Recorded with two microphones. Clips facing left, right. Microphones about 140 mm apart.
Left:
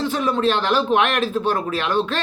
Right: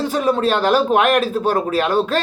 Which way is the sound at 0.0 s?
45° right (ahead or behind).